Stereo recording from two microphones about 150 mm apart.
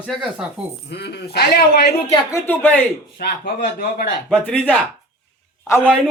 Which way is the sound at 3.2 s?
90° left.